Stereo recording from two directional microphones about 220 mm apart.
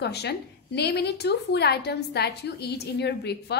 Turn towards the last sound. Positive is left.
turn(degrees=50)  # may be behind; listen again after turning